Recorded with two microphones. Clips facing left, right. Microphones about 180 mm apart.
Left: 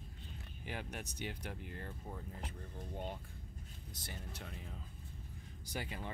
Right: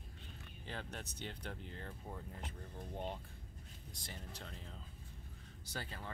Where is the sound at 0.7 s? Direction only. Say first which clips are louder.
Left 2 dB; 15° left (ahead or behind).